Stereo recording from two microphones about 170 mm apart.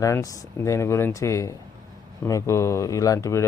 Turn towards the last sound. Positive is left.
turn(degrees=20)  # may be behind; listen again after turning